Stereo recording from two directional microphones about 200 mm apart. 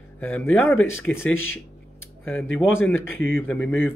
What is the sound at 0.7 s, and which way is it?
Speech, 90° left.